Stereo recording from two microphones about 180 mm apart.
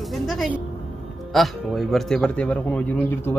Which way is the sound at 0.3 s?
Centre (ahead or behind).